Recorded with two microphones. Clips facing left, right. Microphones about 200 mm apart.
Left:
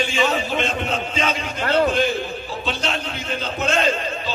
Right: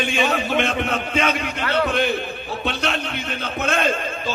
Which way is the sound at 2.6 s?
60° right (ahead or behind).